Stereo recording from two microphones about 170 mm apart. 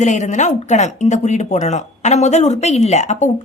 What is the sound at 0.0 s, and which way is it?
Speech, 45° left (ahead or behind).